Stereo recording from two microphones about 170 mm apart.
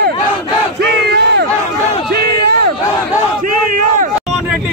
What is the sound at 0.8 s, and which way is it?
Battle cry, 75° right (ahead or behind).